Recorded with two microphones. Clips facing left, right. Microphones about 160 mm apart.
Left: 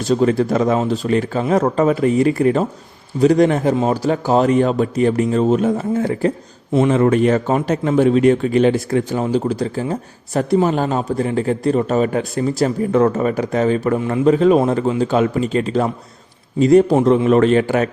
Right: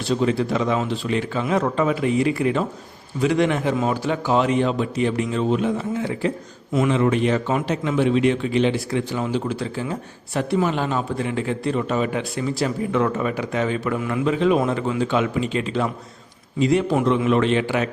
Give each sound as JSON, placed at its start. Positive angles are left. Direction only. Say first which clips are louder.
{"t": 0.0, "sound": "a man's voice", "louder": "left 5 dB", "side_deg": 45}